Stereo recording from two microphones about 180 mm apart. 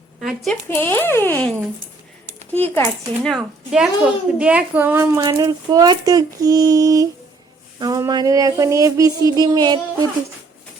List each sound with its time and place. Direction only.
0.2 s a woman's voice: centre (ahead or behind)
0.5 s speech: 15° left (ahead or behind)
2.5 s speech: 10° left (ahead or behind)
3.2 s a woman's voice: centre (ahead or behind); by 10.1 s 25° right (ahead or behind)